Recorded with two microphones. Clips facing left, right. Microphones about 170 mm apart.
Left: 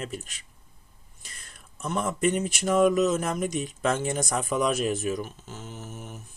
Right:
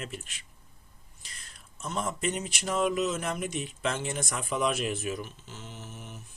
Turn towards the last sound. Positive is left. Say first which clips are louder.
# left 4 dB
turn(degrees=45)  # may be behind; listen again after turning